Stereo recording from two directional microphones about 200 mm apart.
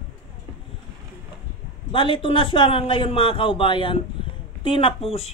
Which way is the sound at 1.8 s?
25° left (ahead or behind).